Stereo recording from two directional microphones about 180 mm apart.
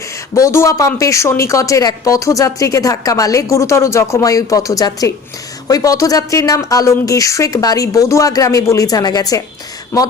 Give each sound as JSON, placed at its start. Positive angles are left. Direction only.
{"t": 0.3, "sound": "a woman's voice", "side_deg": 15}